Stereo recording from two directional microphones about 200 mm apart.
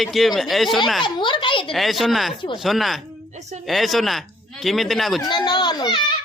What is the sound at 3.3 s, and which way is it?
Music, 35° right (ahead or behind).